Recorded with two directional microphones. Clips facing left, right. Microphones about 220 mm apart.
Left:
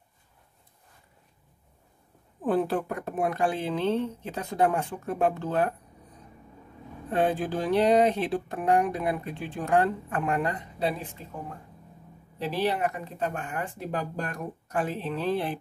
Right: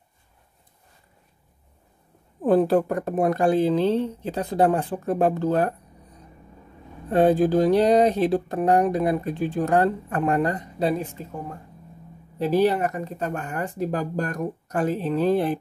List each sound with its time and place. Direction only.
2.4 s speech: 40° right (ahead or behind)
7.1 s speech: 40° right (ahead or behind)
12.4 s speech: 45° right (ahead or behind)